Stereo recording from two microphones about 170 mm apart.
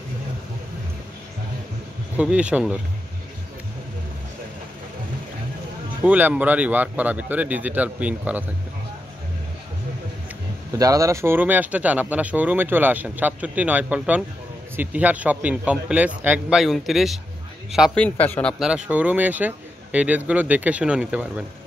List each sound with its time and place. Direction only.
2.1 s speech: 5° right (ahead or behind)
6.0 s speech: 10° right (ahead or behind)
10.8 s a man's voice: 20° right (ahead or behind); by 18.6 s 10° left (ahead or behind)
18.6 s speech: 5° right (ahead or behind)